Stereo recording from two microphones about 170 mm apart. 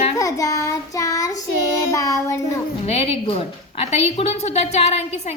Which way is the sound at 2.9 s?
35° left (ahead or behind).